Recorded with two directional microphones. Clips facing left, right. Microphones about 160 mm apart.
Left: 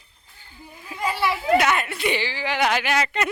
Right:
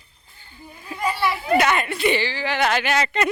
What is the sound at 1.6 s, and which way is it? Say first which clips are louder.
Speech: right 2 dB; 5° left (ahead or behind).